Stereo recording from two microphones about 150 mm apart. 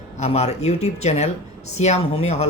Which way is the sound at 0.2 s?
45° left (ahead or behind).